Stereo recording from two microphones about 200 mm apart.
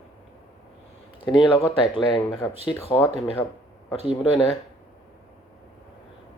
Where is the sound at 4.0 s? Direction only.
25° left (ahead or behind).